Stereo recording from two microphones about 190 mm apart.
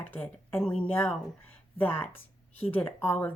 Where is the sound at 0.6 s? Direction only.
30° left (ahead or behind).